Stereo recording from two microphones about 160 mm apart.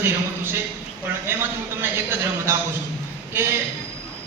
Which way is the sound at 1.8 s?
15° right (ahead or behind).